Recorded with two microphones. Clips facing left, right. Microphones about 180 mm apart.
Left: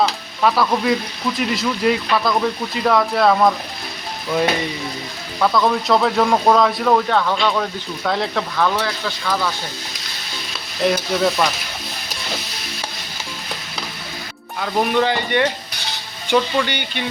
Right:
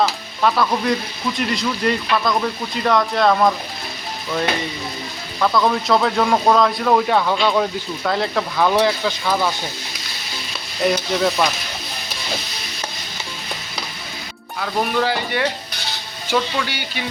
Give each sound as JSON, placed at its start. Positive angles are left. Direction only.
{"t": 0.0, "sound": "speech", "side_deg": 0}
{"t": 5.4, "sound": "speech", "side_deg": 0}
{"t": 8.6, "sound": "speech", "side_deg": -15}
{"t": 10.8, "sound": "speech", "side_deg": 0}
{"t": 14.6, "sound": "speech", "side_deg": 0}